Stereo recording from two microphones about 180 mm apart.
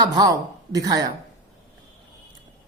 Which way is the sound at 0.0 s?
20° right (ahead or behind).